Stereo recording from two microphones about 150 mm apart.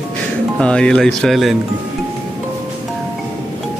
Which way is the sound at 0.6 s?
5° left (ahead or behind).